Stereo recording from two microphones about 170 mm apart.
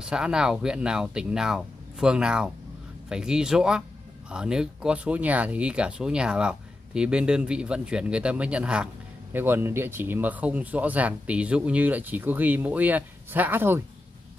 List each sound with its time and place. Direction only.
0.0 s speech: 5° right (ahead or behind)